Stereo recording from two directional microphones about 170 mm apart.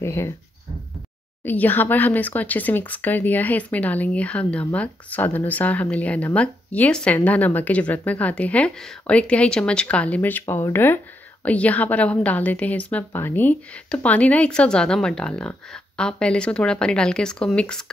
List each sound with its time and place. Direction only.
0.0 s speech: 15° left (ahead or behind)
1.4 s a woman's voice: 10° left (ahead or behind)